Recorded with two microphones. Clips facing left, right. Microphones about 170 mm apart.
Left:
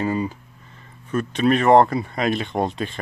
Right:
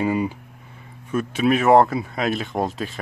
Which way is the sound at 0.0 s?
10° right (ahead or behind).